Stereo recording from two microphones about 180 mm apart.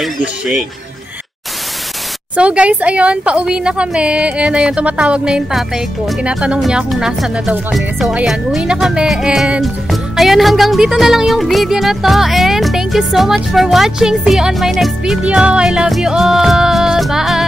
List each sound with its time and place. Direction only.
0.0 s a woman's voice: centre (ahead or behind)
2.3 s a woman's voice: 5° right (ahead or behind)